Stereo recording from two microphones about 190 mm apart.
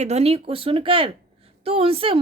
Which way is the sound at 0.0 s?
35° right (ahead or behind).